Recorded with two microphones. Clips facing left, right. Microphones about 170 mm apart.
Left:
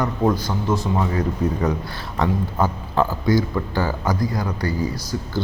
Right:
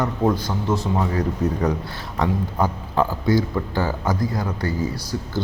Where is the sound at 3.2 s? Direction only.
30° right (ahead or behind).